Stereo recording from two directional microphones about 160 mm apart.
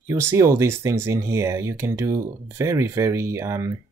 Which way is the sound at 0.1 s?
15° right (ahead or behind).